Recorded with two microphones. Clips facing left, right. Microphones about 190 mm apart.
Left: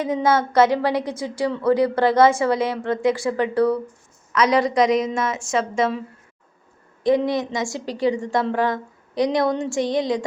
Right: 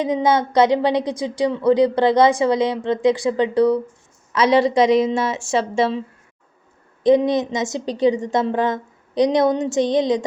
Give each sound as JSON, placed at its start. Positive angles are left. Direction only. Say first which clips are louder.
{"t": 0.0, "sound": "a woman's voice", "louder": "right 2 dB", "side_deg": -20}
{"t": 4.3, "sound": "a woman's voice", "louder": "right 3 dB", "side_deg": -30}
{"t": 7.0, "sound": "a woman's voice", "louder": "right 4 dB", "side_deg": -20}